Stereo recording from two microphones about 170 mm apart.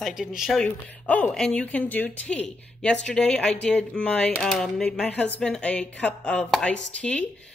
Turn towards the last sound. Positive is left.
turn(degrees=5)  # may be behind; listen again after turning